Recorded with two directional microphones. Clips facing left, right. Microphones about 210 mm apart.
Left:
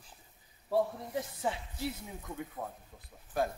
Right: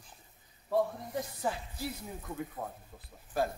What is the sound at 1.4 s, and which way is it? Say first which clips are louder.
Speech: even; centre (ahead or behind).